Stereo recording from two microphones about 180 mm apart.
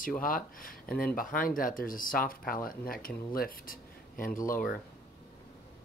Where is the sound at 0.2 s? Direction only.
50° left (ahead or behind).